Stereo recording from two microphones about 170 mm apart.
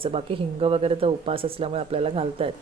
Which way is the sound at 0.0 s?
35° right (ahead or behind).